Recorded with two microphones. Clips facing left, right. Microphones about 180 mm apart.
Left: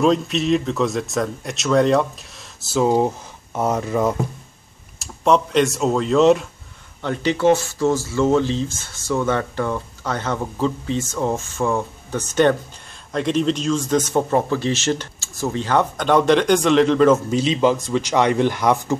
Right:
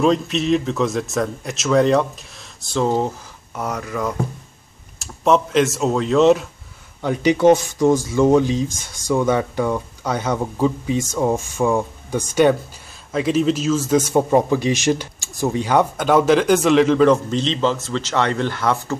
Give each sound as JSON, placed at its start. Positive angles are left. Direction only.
{"t": 0.0, "sound": "a man's voice", "side_deg": 0}
{"t": 3.5, "sound": "speech", "side_deg": 25}
{"t": 4.9, "sound": "speech", "side_deg": 0}
{"t": 7.0, "sound": "a man's voice", "side_deg": -10}